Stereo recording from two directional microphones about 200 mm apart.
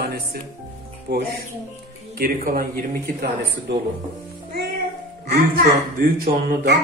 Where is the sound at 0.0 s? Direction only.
50° right (ahead or behind).